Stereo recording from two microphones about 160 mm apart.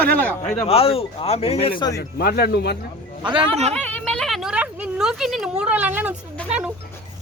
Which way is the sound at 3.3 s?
35° right (ahead or behind).